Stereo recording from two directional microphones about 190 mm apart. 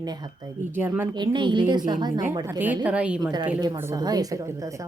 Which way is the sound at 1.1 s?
25° right (ahead or behind).